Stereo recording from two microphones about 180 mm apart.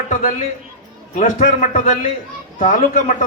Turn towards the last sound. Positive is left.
turn(degrees=45)  # may be behind; listen again after turning